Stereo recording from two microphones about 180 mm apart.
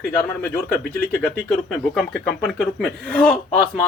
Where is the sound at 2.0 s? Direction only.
Centre (ahead or behind).